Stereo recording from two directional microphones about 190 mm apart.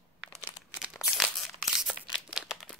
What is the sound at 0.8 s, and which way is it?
Crumpling, centre (ahead or behind).